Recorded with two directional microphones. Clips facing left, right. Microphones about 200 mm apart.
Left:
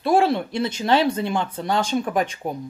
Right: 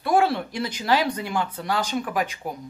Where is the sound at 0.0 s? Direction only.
25° left (ahead or behind).